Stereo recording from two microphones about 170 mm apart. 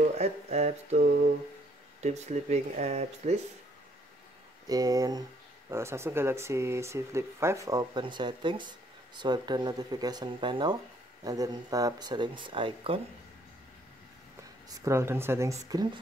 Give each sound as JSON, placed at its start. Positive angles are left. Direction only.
{"t": 0.1, "sound": "speech", "side_deg": -40}
{"t": 4.6, "sound": "speech", "side_deg": -20}
{"t": 14.7, "sound": "speech", "side_deg": -15}